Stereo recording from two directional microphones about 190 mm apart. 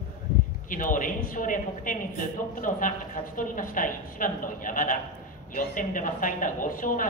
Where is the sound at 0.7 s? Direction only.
45° left (ahead or behind).